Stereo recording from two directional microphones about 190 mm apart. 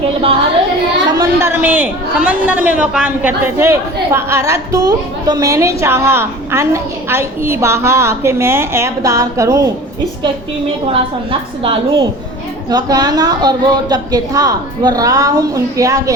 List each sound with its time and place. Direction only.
1.2 s a woman's voice: 15° right (ahead or behind)
10.8 s a woman's voice: 30° right (ahead or behind)